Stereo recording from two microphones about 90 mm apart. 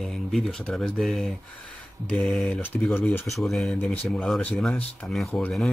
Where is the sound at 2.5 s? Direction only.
15° left (ahead or behind).